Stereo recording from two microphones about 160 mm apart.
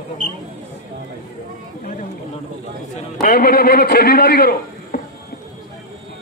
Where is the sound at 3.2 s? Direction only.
65° left (ahead or behind).